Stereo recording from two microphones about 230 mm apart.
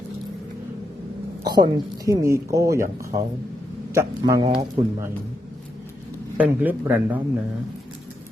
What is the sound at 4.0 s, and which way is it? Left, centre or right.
Speech, centre.